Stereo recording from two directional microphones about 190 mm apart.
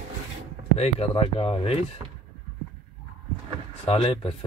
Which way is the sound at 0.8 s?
30° left (ahead or behind).